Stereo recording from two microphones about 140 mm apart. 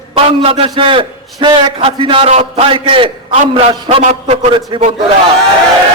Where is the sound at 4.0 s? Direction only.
60° right (ahead or behind).